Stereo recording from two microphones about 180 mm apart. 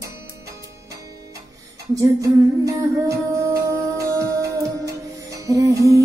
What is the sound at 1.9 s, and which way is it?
Humming, 20° right (ahead or behind).